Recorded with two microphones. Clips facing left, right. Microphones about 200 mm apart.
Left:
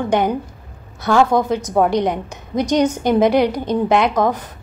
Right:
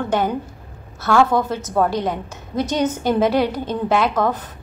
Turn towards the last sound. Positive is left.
turn(degrees=10)  # may be behind; listen again after turning